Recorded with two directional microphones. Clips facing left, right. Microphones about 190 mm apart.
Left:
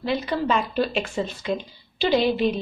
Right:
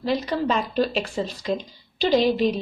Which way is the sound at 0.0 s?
40° right (ahead or behind).